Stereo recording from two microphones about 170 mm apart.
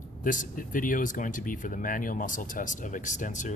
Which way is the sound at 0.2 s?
50° left (ahead or behind).